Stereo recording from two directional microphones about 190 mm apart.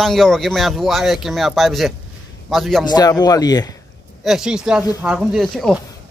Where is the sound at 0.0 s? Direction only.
Centre (ahead or behind).